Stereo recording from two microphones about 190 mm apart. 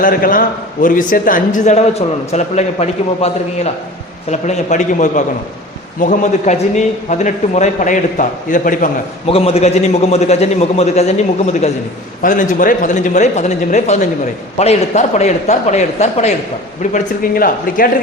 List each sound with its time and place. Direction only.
0.0 s a man's voice: 50° left (ahead or behind)
9.2 s a man's voice: 30° left (ahead or behind)
16.9 s a man's voice: 45° left (ahead or behind)